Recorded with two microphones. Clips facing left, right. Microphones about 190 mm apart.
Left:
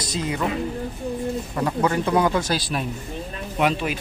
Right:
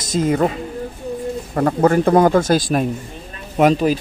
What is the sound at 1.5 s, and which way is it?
A man's voice, 50° right (ahead or behind).